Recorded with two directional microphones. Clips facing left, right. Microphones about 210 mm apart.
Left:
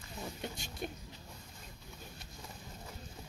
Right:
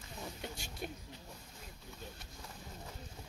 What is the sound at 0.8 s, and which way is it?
Speech, 5° right (ahead or behind).